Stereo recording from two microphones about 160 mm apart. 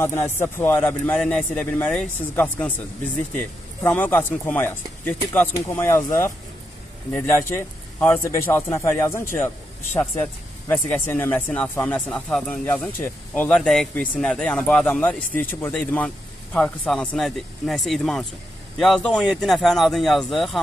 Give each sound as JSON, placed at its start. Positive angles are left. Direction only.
{"t": 0.0, "sound": "speech", "side_deg": 15}
{"t": 10.7, "sound": "speech", "side_deg": 15}